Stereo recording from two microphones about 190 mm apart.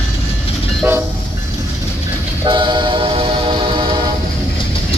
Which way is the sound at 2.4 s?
25° right (ahead or behind).